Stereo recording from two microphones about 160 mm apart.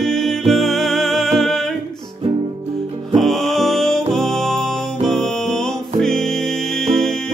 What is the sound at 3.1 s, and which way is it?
Music, centre (ahead or behind).